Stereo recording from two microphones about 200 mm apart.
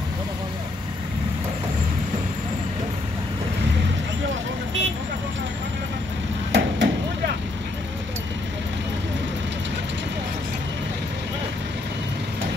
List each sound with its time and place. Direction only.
6.5 s vehicle: 55° right (ahead or behind)